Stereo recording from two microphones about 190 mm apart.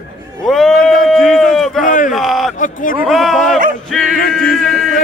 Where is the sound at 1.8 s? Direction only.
45° left (ahead or behind).